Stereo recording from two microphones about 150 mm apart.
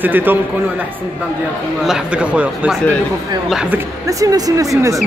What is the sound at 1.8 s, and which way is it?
Speech, 5° right (ahead or behind).